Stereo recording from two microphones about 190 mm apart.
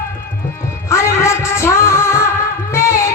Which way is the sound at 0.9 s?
15° left (ahead or behind).